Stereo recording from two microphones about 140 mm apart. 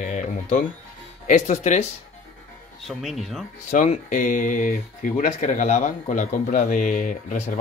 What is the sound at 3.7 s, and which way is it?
Speech, 60° left (ahead or behind).